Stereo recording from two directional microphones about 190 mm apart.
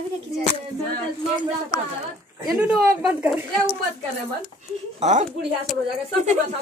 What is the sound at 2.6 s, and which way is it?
Speech, 5° right (ahead or behind).